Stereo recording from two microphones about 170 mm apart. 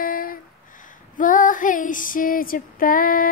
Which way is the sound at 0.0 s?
55° left (ahead or behind).